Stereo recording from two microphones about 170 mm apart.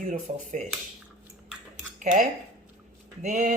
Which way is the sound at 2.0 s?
50° right (ahead or behind).